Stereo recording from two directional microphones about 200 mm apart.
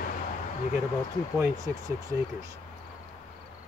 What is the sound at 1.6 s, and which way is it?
Speech, 20° right (ahead or behind).